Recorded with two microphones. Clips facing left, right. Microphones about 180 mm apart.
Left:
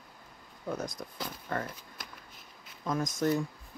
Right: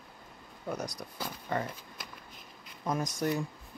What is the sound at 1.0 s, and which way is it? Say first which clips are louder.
Speech: even; 10° right (ahead or behind).